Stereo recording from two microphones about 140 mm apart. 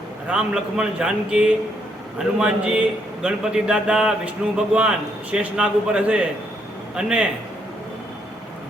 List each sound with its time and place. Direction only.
0.3 s a man's voice: 5° right (ahead or behind)